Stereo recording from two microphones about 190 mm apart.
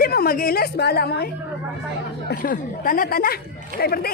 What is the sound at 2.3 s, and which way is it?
A woman's voice, 50° left (ahead or behind).